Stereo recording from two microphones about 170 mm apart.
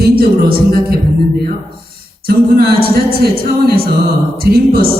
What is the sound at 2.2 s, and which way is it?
A man's voice, 65° right (ahead or behind).